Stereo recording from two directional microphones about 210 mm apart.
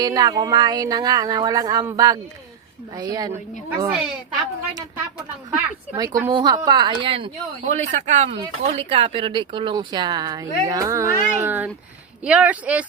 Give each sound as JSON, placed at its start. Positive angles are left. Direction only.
{"t": 0.0, "sound": "speech", "side_deg": -20}
{"t": 5.5, "sound": "speech", "side_deg": -15}